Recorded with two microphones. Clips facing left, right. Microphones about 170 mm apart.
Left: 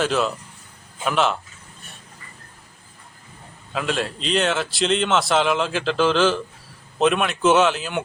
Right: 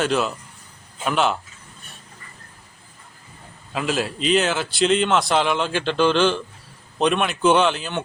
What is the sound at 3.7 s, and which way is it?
A man's voice, centre (ahead or behind).